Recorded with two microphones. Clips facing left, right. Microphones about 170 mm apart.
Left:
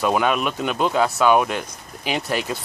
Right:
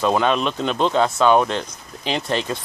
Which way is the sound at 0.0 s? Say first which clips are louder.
Right 1 dB; 10° left (ahead or behind).